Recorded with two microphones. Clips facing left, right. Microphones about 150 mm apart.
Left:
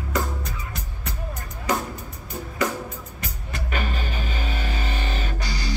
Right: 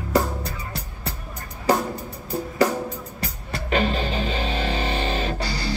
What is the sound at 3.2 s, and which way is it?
Music, 25° right (ahead or behind).